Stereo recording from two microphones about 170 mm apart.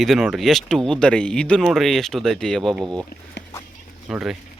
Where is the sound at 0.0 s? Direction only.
Centre (ahead or behind).